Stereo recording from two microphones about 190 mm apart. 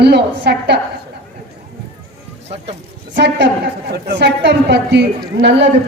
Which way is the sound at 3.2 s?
65° right (ahead or behind).